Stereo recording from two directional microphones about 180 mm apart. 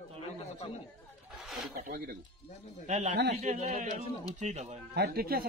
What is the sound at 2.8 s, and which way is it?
Speech, 40° right (ahead or behind).